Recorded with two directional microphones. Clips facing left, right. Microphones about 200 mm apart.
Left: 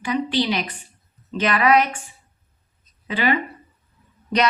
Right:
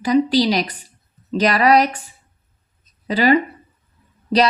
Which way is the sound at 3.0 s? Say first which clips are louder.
Right 6 dB; 35° right (ahead or behind).